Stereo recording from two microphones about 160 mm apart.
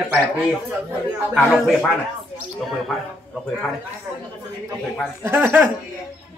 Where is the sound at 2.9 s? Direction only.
Centre (ahead or behind).